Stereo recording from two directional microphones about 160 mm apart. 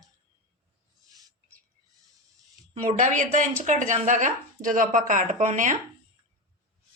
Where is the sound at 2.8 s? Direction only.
50° right (ahead or behind).